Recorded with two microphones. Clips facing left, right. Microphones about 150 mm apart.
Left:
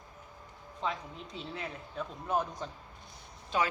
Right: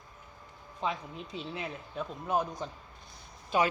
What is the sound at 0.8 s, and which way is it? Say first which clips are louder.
Speech: right 2 dB; 10° right (ahead or behind).